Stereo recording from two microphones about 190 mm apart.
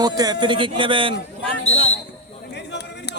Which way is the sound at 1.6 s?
35° left (ahead or behind).